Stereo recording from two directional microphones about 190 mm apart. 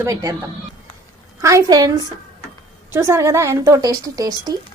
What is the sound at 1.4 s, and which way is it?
A woman's voice, 15° right (ahead or behind).